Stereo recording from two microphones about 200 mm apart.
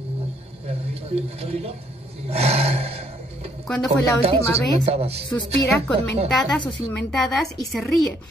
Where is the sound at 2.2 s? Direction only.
30° right (ahead or behind).